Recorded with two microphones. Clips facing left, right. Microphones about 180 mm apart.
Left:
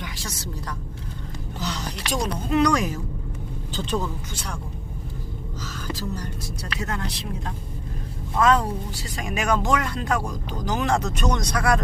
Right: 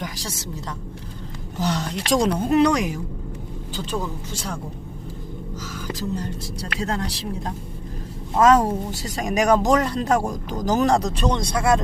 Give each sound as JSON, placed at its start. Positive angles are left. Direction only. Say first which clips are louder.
{"t": 0.3, "sound": "speech", "louder": "right 2 dB", "side_deg": -25}
{"t": 1.6, "sound": "speech", "louder": "right 7 dB", "side_deg": -55}
{"t": 2.6, "sound": "speech", "louder": "even", "side_deg": -20}
{"t": 5.6, "sound": "speech", "louder": "right 2 dB", "side_deg": -20}
{"t": 6.6, "sound": "speech", "louder": "right 4 dB", "side_deg": -30}